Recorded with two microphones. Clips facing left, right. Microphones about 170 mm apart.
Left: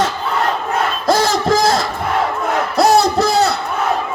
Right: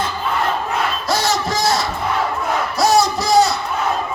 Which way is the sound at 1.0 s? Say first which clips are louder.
Left 8 dB; 50° left (ahead or behind).